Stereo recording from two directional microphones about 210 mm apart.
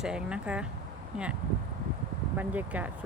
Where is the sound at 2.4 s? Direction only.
10° right (ahead or behind).